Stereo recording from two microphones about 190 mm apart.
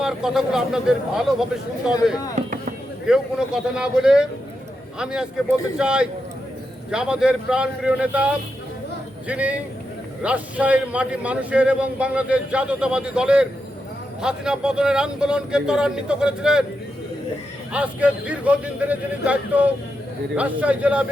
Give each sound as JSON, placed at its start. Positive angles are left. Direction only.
{"t": 0.0, "sound": "a man's voice", "side_deg": 0}
{"t": 2.3, "sound": "a sound", "side_deg": -40}
{"t": 3.1, "sound": "a man's voice", "side_deg": -5}
{"t": 17.7, "sound": "a man's voice", "side_deg": -5}